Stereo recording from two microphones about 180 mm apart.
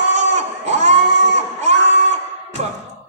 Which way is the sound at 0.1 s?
40° right (ahead or behind).